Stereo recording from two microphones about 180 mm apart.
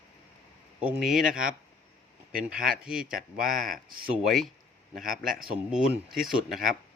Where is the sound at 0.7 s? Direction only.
5° right (ahead or behind).